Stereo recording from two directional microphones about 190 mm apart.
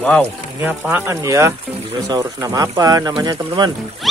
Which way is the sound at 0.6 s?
10° right (ahead or behind).